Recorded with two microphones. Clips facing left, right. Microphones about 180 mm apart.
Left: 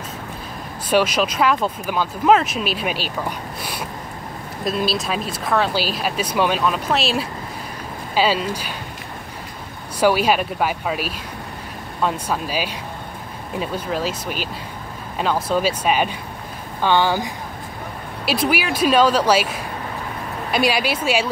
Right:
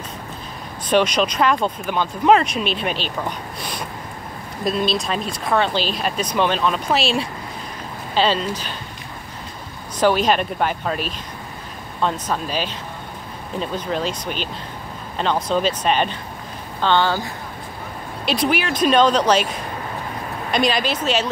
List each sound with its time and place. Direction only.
0.8 s speech: 5° left (ahead or behind)
9.9 s speech: 10° left (ahead or behind)